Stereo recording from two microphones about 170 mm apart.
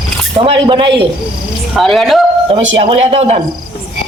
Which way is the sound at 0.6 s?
30° right (ahead or behind).